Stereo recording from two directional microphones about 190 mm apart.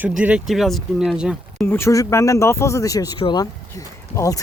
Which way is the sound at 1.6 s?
10° left (ahead or behind).